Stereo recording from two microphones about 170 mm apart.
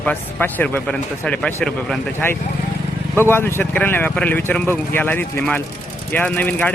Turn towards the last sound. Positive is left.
turn(degrees=10)  # may be behind; listen again after turning